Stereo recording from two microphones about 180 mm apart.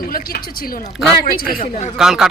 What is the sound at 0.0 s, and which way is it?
Speech, 55° left (ahead or behind).